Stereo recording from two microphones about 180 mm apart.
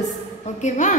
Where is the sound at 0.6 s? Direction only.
40° left (ahead or behind).